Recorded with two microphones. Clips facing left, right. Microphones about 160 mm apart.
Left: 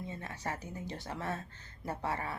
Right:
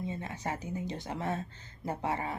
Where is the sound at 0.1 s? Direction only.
20° right (ahead or behind).